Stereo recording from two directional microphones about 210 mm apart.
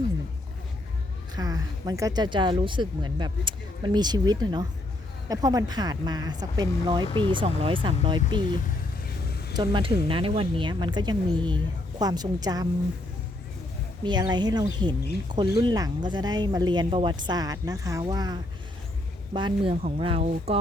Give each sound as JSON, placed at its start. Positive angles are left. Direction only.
{"t": 1.4, "sound": "speech", "side_deg": -15}
{"t": 9.2, "sound": "a sound", "side_deg": 50}
{"t": 9.6, "sound": "speech", "side_deg": -25}
{"t": 14.0, "sound": "speech", "side_deg": -20}